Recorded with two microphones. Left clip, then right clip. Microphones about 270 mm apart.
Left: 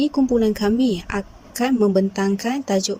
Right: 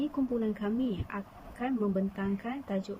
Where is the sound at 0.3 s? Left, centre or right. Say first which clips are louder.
Left 14 dB; left.